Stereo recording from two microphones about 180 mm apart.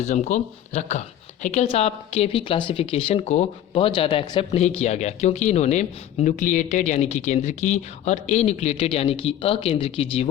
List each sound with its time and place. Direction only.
0.0 s speech: 40° left (ahead or behind)